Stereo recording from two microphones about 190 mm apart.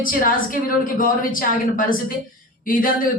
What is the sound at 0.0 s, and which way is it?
Speech, 45° left (ahead or behind).